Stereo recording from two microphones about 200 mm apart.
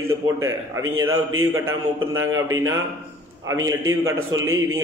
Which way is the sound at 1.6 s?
85° right.